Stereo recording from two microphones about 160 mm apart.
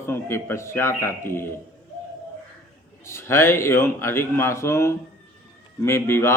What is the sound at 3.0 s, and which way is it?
A man's voice, 15° left (ahead or behind).